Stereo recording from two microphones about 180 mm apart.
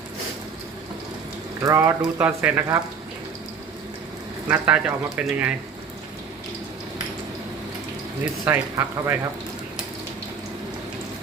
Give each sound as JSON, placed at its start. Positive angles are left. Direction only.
{"t": 1.6, "sound": "speech", "side_deg": -15}
{"t": 4.4, "sound": "speech", "side_deg": -10}
{"t": 8.2, "sound": "speech", "side_deg": -10}